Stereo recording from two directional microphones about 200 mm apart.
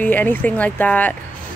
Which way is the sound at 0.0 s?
10° left (ahead or behind).